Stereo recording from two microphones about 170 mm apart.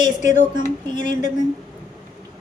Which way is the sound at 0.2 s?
45° left (ahead or behind).